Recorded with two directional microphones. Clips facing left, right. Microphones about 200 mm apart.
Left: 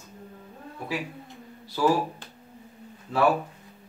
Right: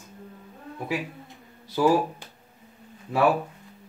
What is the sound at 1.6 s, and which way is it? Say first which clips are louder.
Speech: right 2 dB; 15° right (ahead or behind).